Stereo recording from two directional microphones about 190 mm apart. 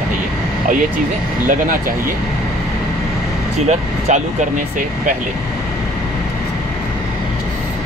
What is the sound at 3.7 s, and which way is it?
Speech, 40° right (ahead or behind).